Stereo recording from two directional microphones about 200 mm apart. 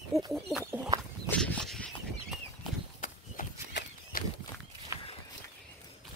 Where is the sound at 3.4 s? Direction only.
45° left (ahead or behind).